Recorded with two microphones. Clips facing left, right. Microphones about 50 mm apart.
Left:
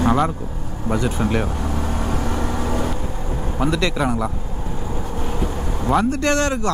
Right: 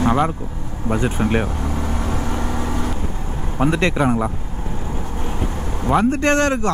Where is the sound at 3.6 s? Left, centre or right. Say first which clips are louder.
Right 3 dB; right.